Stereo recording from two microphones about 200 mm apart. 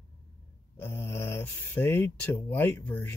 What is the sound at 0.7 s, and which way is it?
Speech, 10° left (ahead or behind).